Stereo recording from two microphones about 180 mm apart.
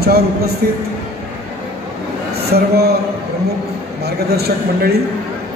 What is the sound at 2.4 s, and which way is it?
Speech, 60° right (ahead or behind).